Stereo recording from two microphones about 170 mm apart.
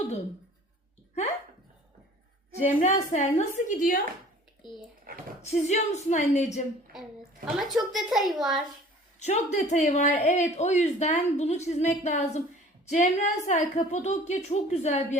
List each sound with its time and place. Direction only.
2.6 s a woman's voice: 45° left (ahead or behind)
5.5 s a woman's voice: 40° left (ahead or behind)
7.4 s a woman's voice: centre (ahead or behind)
9.1 s speech: 40° left (ahead or behind)